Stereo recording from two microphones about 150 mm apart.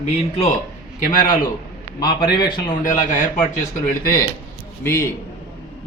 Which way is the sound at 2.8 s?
55° left (ahead or behind).